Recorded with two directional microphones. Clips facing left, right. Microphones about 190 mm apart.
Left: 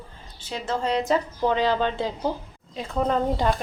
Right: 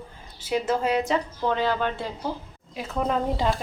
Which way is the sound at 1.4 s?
15° left (ahead or behind).